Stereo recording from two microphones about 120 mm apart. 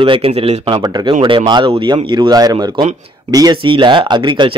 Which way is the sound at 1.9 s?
35° right (ahead or behind).